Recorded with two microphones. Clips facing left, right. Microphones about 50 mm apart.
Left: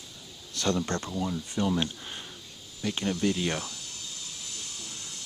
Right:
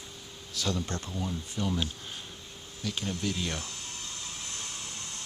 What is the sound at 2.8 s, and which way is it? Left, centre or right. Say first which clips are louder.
Speech: left 5 dB; left.